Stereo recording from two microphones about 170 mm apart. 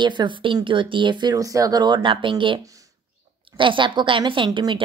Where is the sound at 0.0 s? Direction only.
25° right (ahead or behind).